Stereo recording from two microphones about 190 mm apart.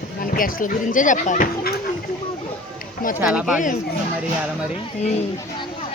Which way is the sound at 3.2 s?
5° right (ahead or behind).